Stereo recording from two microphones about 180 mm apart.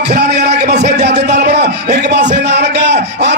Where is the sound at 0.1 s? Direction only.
65° right (ahead or behind).